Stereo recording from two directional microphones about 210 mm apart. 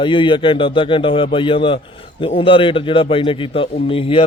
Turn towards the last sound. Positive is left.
turn(degrees=25)  # may be behind; listen again after turning